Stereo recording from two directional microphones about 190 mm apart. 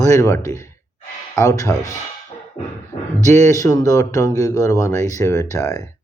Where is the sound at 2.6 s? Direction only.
30° left (ahead or behind).